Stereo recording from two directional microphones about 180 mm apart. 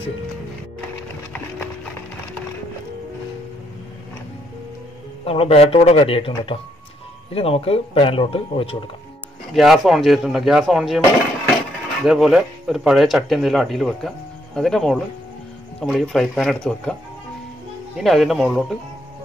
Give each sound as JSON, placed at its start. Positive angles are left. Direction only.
{"t": 5.2, "sound": "speech", "side_deg": 30}
{"t": 9.5, "sound": "speech", "side_deg": 0}
{"t": 12.0, "sound": "speech", "side_deg": 0}
{"t": 17.9, "sound": "speech", "side_deg": 0}